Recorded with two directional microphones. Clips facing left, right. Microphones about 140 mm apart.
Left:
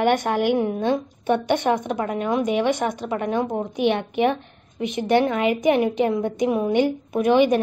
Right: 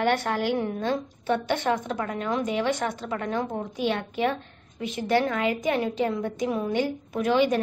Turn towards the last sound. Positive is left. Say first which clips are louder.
# left 5 dB
turn(degrees=15)  # may be behind; listen again after turning